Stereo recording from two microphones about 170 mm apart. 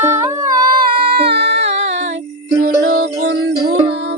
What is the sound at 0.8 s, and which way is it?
Music, 70° right (ahead or behind).